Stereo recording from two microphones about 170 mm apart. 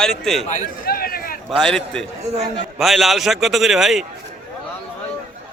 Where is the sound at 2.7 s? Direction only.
Centre (ahead or behind).